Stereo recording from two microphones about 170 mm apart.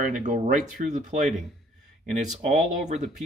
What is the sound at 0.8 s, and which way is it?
Speech, 40° right (ahead or behind).